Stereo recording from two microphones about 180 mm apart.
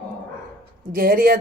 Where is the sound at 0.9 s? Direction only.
55° right (ahead or behind).